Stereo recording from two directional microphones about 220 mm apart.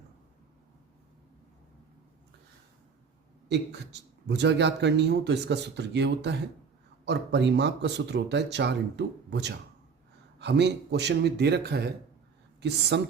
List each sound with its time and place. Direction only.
3.5 s speech: 50° right (ahead or behind)